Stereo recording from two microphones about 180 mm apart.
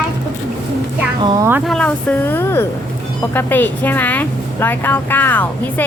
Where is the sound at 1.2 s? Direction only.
15° right (ahead or behind).